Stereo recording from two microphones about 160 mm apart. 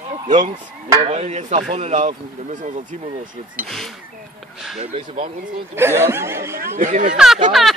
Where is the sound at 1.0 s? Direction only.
40° right (ahead or behind).